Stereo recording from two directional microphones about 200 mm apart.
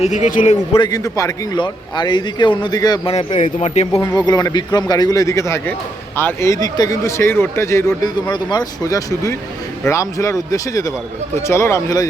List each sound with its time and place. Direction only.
0.0 s a man's voice: 35° left (ahead or behind)
0.7 s a man's voice: 20° left (ahead or behind)
3.1 s a man's voice: 30° left (ahead or behind)
3.9 s speech: 15° left (ahead or behind)